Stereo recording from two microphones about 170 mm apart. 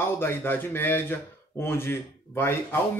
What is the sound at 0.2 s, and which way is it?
Speech, 10° left (ahead or behind).